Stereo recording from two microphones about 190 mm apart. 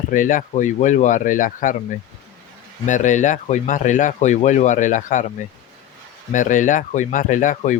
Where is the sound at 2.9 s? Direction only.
40° left (ahead or behind).